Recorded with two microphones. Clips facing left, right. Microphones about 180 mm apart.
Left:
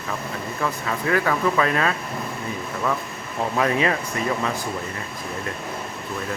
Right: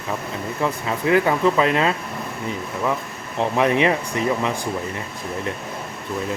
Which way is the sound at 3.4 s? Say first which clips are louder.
Right 3 dB; 25° right (ahead or behind).